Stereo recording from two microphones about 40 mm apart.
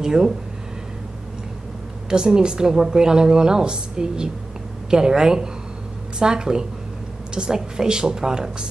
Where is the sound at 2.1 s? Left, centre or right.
Centre.